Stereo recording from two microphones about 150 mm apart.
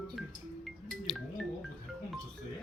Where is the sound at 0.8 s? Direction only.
Centre (ahead or behind).